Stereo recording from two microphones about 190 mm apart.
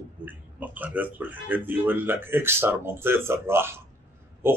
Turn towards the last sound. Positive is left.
turn(degrees=-10)  # may be behind; listen again after turning